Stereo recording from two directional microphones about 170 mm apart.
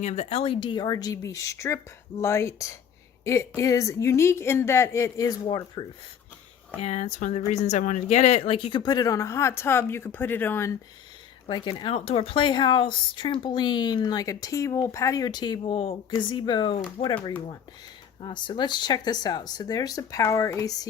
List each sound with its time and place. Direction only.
0.0 s speech: 40° left (ahead or behind); by 5.8 s 25° left (ahead or behind)
6.8 s speech: 45° left (ahead or behind); by 10.7 s 10° left (ahead or behind)
11.4 s speech: 25° left (ahead or behind)
18.2 s speech: 30° left (ahead or behind)